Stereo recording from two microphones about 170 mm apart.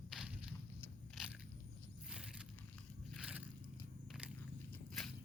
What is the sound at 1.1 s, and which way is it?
Biting, 5° right (ahead or behind).